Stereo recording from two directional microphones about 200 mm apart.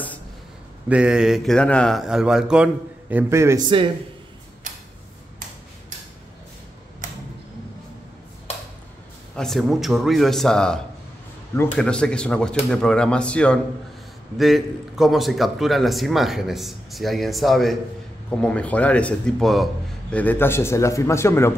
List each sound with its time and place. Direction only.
0.8 s a man's voice: 5° right (ahead or behind); by 3.9 s 25° right (ahead or behind)
4.7 s tick-tock: 40° right (ahead or behind)
9.3 s a man's voice: centre (ahead or behind)